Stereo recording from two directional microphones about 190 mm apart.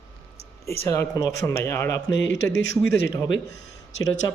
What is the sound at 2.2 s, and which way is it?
Speech, 70° left (ahead or behind).